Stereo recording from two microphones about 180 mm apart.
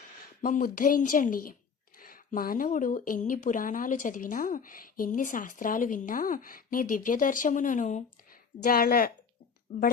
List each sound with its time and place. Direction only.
0.4 s speech: 50° left (ahead or behind)